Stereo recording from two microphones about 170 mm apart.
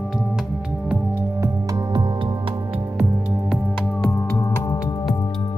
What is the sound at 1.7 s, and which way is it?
Music, 25° right (ahead or behind).